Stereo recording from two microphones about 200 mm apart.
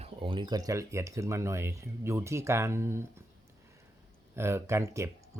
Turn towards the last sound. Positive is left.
turn(degrees=-15)  # may be behind; listen again after turning